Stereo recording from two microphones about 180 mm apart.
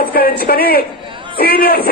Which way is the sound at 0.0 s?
55° left (ahead or behind).